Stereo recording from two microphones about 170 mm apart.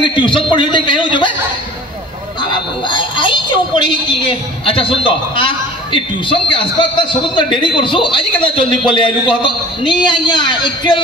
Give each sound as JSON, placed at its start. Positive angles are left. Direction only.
{"t": 0.0, "sound": "a woman's voice", "side_deg": 30}
{"t": 2.4, "sound": "a woman's voice", "side_deg": 30}